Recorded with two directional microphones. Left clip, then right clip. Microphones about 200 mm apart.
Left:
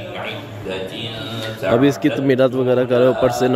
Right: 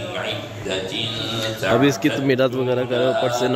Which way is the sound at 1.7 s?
15° left (ahead or behind).